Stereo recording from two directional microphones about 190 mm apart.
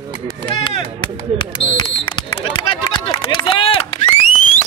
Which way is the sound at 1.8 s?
25° left (ahead or behind).